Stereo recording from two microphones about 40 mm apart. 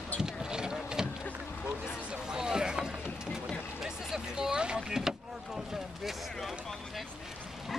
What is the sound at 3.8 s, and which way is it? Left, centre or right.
Vehicle, centre.